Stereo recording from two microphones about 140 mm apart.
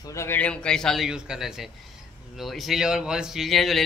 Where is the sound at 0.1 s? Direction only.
20° left (ahead or behind).